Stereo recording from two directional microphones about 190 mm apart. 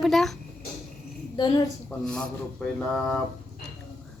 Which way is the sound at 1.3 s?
25° left (ahead or behind).